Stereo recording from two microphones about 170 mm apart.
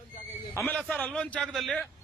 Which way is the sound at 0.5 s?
10° left (ahead or behind).